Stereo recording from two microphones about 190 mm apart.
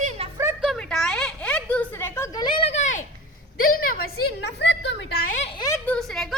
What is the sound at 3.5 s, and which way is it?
A woman's voice, 50° left (ahead or behind).